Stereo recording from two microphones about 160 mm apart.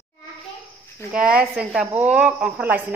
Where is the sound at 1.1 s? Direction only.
5° right (ahead or behind).